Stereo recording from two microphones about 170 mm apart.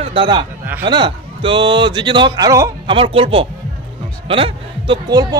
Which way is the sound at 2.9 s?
30° right (ahead or behind).